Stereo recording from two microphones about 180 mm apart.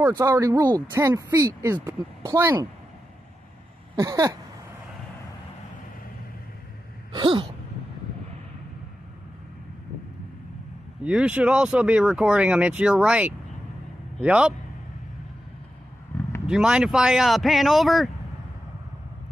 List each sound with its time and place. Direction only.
0.1 s speech: 20° right (ahead or behind)
3.9 s speech: 20° right (ahead or behind)
7.1 s a sound: 25° right (ahead or behind)
11.0 s speech: 5° right (ahead or behind)
16.1 s a sound: 10° left (ahead or behind)
16.4 s speech: 5° right (ahead or behind)